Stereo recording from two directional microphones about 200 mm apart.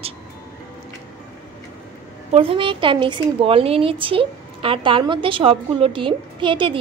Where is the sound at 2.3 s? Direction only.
25° right (ahead or behind).